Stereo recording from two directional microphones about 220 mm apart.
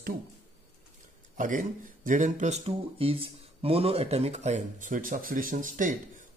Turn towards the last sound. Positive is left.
turn(degrees=-35)  # may be behind; listen again after turning